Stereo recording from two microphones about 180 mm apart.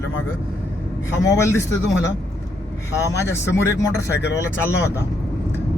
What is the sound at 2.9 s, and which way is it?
Speech, 15° left (ahead or behind).